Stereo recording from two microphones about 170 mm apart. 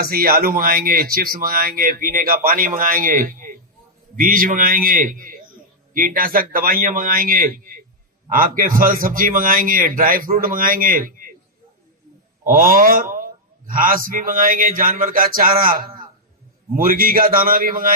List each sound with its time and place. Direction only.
0.0 s speech: 60° right (ahead or behind)
12.5 s speech: 55° right (ahead or behind)